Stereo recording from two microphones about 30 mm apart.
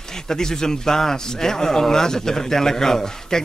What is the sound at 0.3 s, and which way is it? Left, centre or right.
Speech, centre.